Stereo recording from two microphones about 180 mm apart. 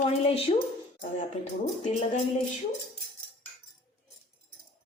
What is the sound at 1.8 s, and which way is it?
Speech, 40° left (ahead or behind).